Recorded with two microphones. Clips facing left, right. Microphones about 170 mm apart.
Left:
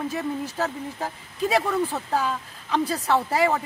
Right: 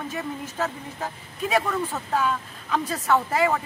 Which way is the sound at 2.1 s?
30° left (ahead or behind).